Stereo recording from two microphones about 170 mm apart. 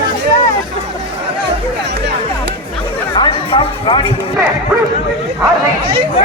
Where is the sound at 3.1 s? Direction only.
30° left (ahead or behind).